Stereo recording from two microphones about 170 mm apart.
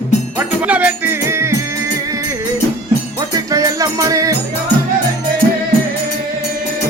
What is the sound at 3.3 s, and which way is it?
Music, 20° right (ahead or behind).